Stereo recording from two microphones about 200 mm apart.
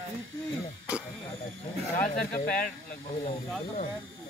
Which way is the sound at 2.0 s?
45° left (ahead or behind).